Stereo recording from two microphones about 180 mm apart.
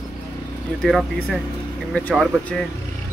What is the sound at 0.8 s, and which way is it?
Speech, centre (ahead or behind).